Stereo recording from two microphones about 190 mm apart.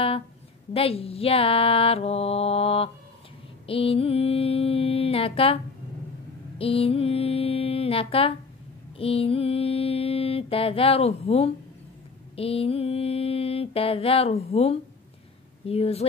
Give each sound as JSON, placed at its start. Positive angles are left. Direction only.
{"t": 0.7, "sound": "mantra", "side_deg": 30}
{"t": 6.6, "sound": "mantra", "side_deg": 30}